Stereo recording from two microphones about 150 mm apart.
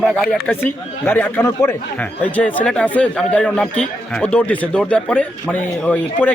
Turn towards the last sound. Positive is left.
turn(degrees=10)  # may be behind; listen again after turning